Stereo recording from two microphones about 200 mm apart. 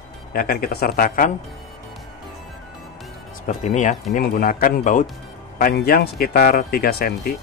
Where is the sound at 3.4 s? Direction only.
40° left (ahead or behind).